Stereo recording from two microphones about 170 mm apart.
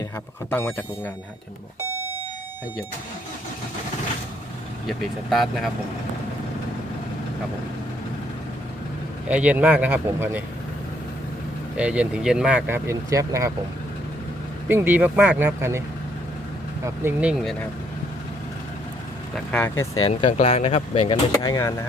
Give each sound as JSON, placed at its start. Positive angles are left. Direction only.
{"t": 0.5, "sound": "speech", "side_deg": 10}
{"t": 4.9, "sound": "speech", "side_deg": 0}
{"t": 9.3, "sound": "speech", "side_deg": -10}
{"t": 11.8, "sound": "speech", "side_deg": -5}
{"t": 14.7, "sound": "speech", "side_deg": -10}
{"t": 16.8, "sound": "speech", "side_deg": -15}
{"t": 19.5, "sound": "speech", "side_deg": 10}
{"t": 20.4, "sound": "speech", "side_deg": 40}
{"t": 21.3, "sound": "speech", "side_deg": 20}